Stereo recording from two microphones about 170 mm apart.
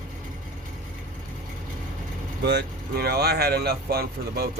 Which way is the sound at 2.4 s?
70° right (ahead or behind).